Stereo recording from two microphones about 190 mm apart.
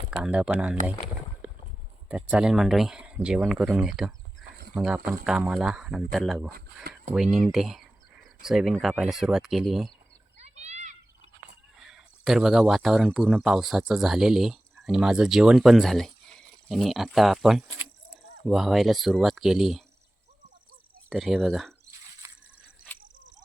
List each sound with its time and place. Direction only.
0.1 s speech: 5° right (ahead or behind)
2.0 s speech: 5° right (ahead or behind)
10.4 s a sound: 35° right (ahead or behind)
11.8 s speech: centre (ahead or behind)
21.1 s speech: centre (ahead or behind)
22.2 s drip: 15° right (ahead or behind)